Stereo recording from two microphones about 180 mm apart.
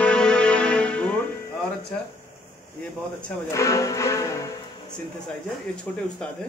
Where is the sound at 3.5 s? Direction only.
15° left (ahead or behind).